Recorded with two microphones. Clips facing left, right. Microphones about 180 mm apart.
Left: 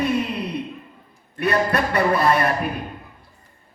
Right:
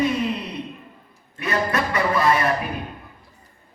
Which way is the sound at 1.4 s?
60° left (ahead or behind).